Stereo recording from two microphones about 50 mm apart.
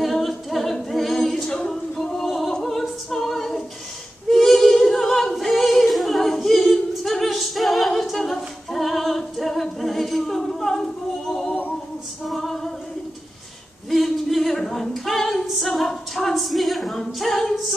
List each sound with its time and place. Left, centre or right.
0.0 s a capella: centre
12.3 s female singing: centre
13.8 s female singing: centre
15.4 s a sound: centre